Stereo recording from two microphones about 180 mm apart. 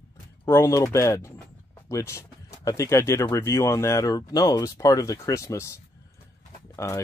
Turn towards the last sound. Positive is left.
turn(degrees=15)  # may be behind; listen again after turning